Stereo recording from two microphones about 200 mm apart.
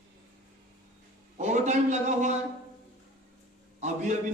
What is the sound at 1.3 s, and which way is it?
A man's voice, 35° right (ahead or behind).